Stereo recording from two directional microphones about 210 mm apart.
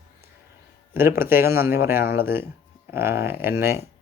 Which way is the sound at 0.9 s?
10° right (ahead or behind).